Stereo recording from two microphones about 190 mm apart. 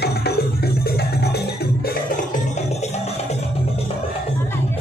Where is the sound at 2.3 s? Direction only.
35° left (ahead or behind).